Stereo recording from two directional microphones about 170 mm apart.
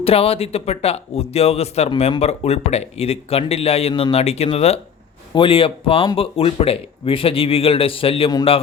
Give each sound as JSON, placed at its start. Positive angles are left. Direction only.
{"t": 0.0, "sound": "speech", "side_deg": 35}